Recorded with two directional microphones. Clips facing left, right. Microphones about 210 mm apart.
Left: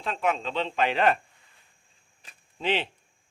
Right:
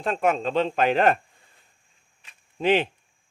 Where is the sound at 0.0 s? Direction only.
50° right (ahead or behind).